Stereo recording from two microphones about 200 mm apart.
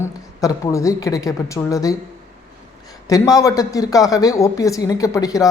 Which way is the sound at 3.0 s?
15° left (ahead or behind).